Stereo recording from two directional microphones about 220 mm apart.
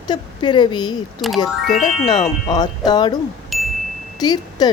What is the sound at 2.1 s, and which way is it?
Speech, 20° left (ahead or behind).